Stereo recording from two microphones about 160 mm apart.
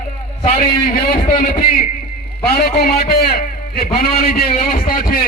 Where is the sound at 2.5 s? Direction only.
70° left (ahead or behind).